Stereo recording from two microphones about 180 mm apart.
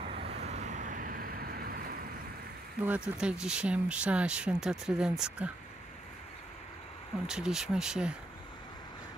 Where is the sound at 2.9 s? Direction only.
5° right (ahead or behind).